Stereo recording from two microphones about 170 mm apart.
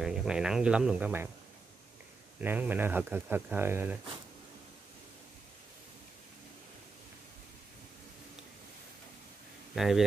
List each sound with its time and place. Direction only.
0.0 s speech: 5° right (ahead or behind)
2.4 s speech: 10° right (ahead or behind)
9.8 s speech: centre (ahead or behind)